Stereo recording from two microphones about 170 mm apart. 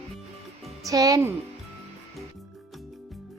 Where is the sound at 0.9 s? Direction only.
20° right (ahead or behind).